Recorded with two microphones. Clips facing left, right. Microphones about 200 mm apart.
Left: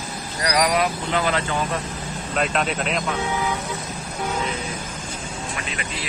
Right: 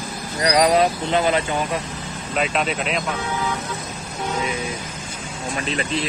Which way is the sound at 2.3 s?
Centre (ahead or behind).